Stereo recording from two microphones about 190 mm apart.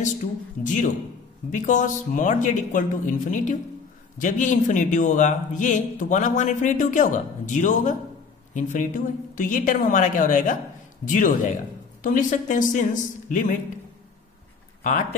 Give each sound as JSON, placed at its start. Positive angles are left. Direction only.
{"t": 1.5, "sound": "a man's voice", "side_deg": 40}
{"t": 14.8, "sound": "speech", "side_deg": 40}